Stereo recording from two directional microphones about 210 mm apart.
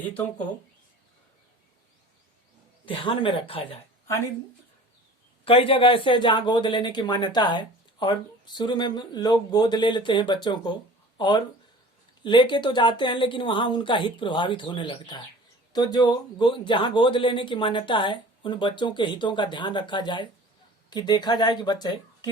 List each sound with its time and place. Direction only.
2.8 s speech: 25° left (ahead or behind)
5.5 s speech: 25° left (ahead or behind)